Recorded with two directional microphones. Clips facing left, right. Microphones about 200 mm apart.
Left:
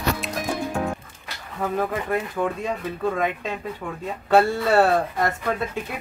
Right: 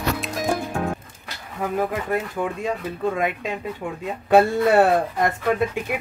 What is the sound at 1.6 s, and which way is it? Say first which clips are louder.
Speech: even; 10° right (ahead or behind).